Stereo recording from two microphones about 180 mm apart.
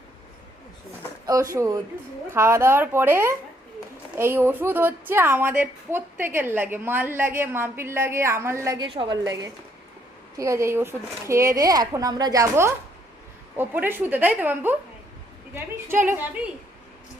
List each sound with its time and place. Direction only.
1.5 s a woman's voice: 20° right (ahead or behind)